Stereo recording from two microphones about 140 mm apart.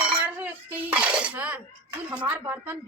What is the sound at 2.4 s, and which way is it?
Speech, 20° right (ahead or behind).